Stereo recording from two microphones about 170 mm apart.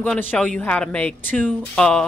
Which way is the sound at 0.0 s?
10° left (ahead or behind).